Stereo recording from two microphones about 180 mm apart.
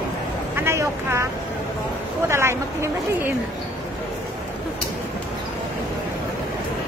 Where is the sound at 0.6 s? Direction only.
15° right (ahead or behind).